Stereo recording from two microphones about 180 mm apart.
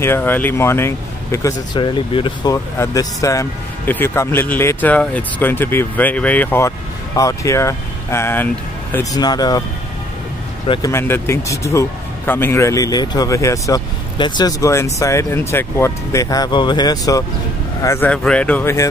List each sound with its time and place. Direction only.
0.0 s speech: 10° left (ahead or behind)
10.7 s speech: 15° left (ahead or behind)